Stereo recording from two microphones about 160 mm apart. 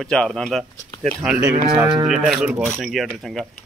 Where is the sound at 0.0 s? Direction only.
5° left (ahead or behind).